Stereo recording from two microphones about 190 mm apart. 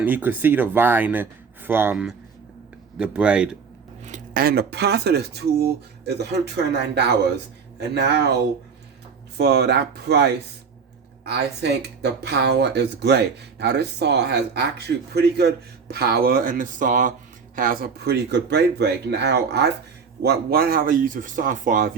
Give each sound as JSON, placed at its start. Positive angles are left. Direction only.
{"t": 0.0, "sound": "speech", "side_deg": -10}
{"t": 4.0, "sound": "speech", "side_deg": -45}
{"t": 9.4, "sound": "speech", "side_deg": -60}